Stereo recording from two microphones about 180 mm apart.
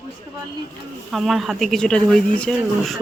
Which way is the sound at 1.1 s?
Centre (ahead or behind).